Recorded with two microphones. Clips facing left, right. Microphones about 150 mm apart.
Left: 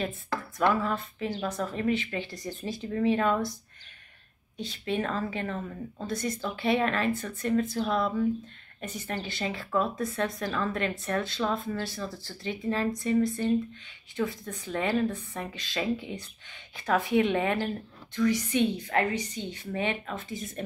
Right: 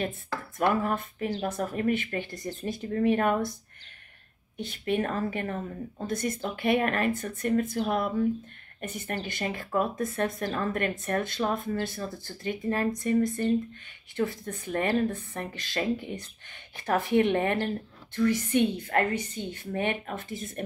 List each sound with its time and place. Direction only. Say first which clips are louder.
0.6 s a woman's voice: right 1 dB; 50° right (ahead or behind)
4.6 s a woman's voice: right 2 dB; 55° right (ahead or behind)